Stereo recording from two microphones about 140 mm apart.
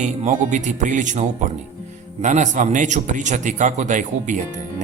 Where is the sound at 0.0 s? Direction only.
60° right (ahead or behind).